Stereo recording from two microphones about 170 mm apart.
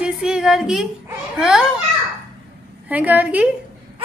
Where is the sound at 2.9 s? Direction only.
10° right (ahead or behind).